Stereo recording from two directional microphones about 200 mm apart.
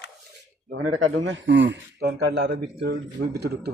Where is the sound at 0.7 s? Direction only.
90° right; by 3.7 s 55° right (ahead or behind).